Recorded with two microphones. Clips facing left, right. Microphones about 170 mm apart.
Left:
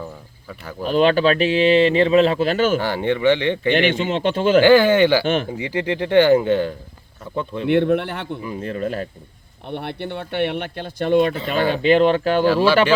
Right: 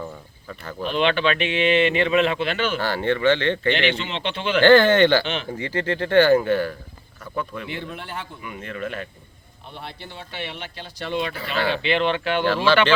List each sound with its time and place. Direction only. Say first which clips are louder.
0.0 s cricket: left 1 dB; 5° left (ahead or behind)
0.8 s speech: left 5 dB; 40° left (ahead or behind)
2.8 s speech: left 2 dB; 15° left (ahead or behind)
3.8 s speech: left 5 dB; 50° left (ahead or behind)
4.6 s speech: right 1 dB; 10° left (ahead or behind)
5.2 s speech: left 8 dB; 50° left (ahead or behind)
5.5 s speech: left 2 dB; 15° left (ahead or behind)
7.7 s speech: left 15 dB; 65° left (ahead or behind)
8.4 s speech: left 6 dB; 35° left (ahead or behind)
9.6 s speech: left 10 dB; 65° left (ahead or behind); by 12.5 s 40° left (ahead or behind)